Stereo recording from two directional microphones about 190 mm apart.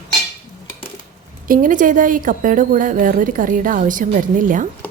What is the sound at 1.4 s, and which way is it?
A woman's voice, 45° right (ahead or behind).